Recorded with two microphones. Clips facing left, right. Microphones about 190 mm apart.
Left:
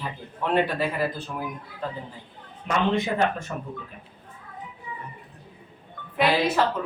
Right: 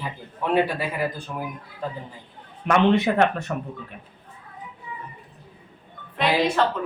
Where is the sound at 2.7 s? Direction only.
70° right (ahead or behind).